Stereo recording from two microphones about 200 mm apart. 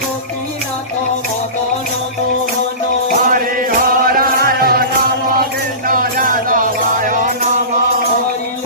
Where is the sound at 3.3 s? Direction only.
45° right (ahead or behind).